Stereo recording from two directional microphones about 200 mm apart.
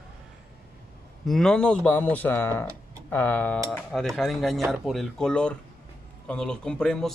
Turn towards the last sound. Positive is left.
turn(degrees=5)  # may be behind; listen again after turning